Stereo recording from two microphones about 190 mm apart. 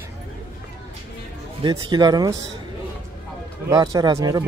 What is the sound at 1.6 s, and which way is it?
Speech, 20° right (ahead or behind).